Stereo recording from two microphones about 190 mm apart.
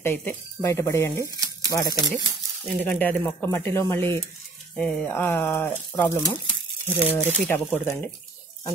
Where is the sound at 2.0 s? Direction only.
20° right (ahead or behind).